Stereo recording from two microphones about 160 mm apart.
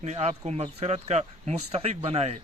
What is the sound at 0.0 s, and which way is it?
Speech, 45° right (ahead or behind).